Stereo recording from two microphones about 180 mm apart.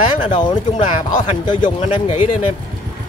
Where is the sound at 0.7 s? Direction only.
45° left (ahead or behind).